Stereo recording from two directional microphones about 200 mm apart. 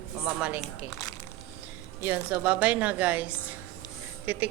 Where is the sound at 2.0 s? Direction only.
5° right (ahead or behind).